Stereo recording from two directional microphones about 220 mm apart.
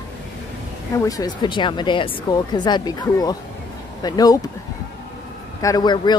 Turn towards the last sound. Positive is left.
turn(degrees=20)  # may be behind; listen again after turning